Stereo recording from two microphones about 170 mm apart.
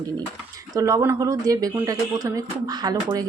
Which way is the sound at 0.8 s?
20° right (ahead or behind).